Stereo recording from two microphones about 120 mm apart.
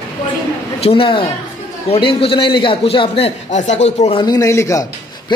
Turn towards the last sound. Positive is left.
turn(degrees=25)  # may be behind; listen again after turning